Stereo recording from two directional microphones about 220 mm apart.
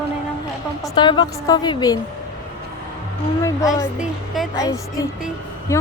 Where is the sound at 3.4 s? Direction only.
15° left (ahead or behind).